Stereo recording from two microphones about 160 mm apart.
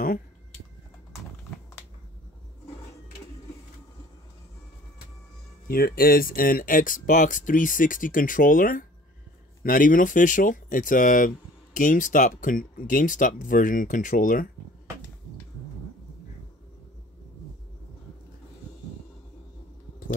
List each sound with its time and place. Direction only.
5.7 s speech: 70° left (ahead or behind)